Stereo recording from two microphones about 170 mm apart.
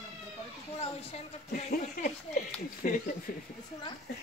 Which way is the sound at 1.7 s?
55° left (ahead or behind).